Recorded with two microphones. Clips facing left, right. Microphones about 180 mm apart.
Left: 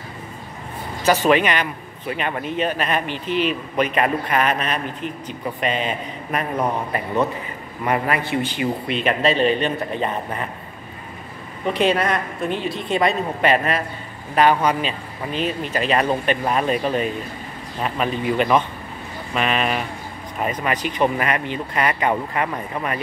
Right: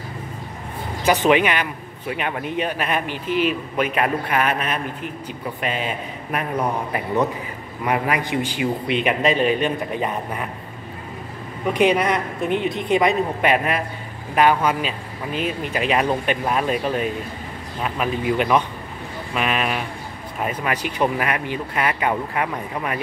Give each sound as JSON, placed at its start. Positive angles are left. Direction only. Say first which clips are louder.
{"t": 1.0, "sound": "a man's voice", "louder": "even", "side_deg": -15}
{"t": 7.8, "sound": "a man's voice", "louder": "even", "side_deg": -10}
{"t": 11.7, "sound": "a man's voice", "louder": "right 1 dB", "side_deg": -15}